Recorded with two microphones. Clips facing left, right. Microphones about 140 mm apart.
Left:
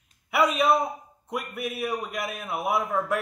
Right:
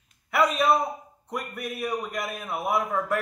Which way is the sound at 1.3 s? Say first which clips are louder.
Left 1 dB; centre (ahead or behind).